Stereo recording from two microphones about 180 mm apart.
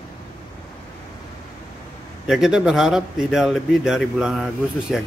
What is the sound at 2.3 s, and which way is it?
A man's voice, 5° right (ahead or behind).